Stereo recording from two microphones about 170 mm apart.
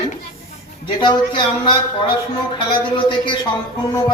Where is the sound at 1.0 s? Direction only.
25° left (ahead or behind).